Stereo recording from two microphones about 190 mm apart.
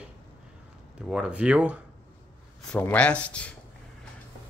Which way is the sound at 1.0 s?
5° right (ahead or behind).